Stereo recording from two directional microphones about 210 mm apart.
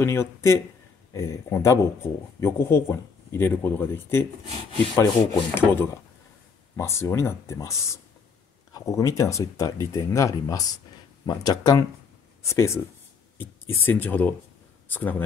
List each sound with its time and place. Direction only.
0.0 s speech: 10° left (ahead or behind)